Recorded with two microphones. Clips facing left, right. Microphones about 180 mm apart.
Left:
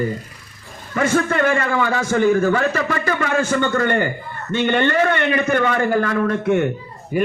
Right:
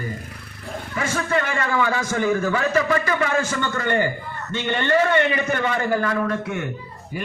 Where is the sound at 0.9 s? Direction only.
55° left (ahead or behind).